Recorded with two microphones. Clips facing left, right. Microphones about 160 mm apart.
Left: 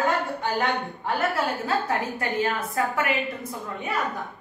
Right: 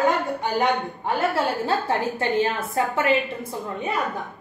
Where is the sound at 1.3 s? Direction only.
30° right (ahead or behind).